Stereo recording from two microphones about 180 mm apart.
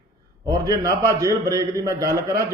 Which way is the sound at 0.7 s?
20° right (ahead or behind).